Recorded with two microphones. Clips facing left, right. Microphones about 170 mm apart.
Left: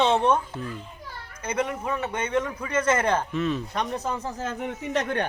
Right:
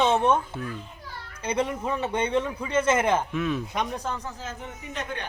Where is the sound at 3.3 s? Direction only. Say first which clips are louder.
Left 1 dB; 5° right (ahead or behind).